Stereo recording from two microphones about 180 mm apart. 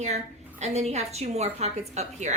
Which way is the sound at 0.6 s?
35° right (ahead or behind).